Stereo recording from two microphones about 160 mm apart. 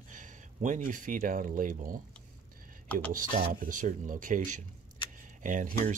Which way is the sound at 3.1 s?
55° right (ahead or behind).